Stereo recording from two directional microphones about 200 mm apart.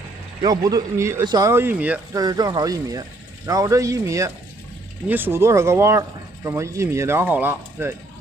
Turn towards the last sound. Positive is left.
turn(degrees=-10)  # may be behind; listen again after turning